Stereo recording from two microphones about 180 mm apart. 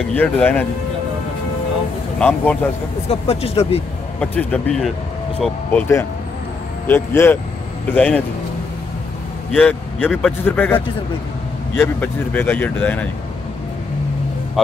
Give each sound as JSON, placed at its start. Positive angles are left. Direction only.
{"t": 0.1, "sound": "speech", "side_deg": 10}
{"t": 2.1, "sound": "a man's voice", "side_deg": 5}
{"t": 3.1, "sound": "speech", "side_deg": 35}
{"t": 4.2, "sound": "speech", "side_deg": 5}
{"t": 9.5, "sound": "speech", "side_deg": 10}